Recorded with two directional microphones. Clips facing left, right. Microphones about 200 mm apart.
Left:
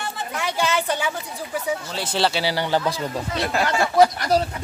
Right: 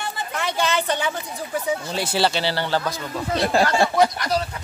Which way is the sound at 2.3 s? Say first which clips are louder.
Left 1 dB; 10° left (ahead or behind).